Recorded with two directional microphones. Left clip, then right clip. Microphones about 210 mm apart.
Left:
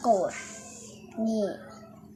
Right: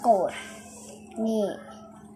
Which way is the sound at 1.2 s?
25° right (ahead or behind).